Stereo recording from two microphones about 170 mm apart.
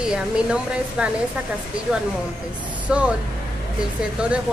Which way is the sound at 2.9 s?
5° right (ahead or behind).